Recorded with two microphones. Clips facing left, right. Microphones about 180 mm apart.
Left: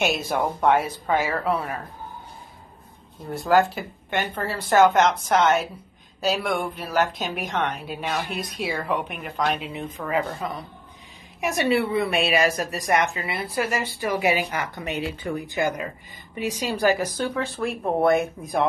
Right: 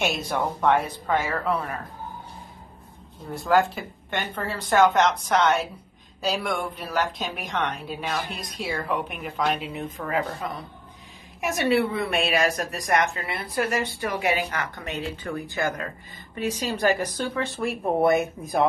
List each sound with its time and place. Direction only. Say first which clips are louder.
0.0 s speech: left 2 dB; centre (ahead or behind)
3.3 s a woman's voice: left 2 dB; centre (ahead or behind)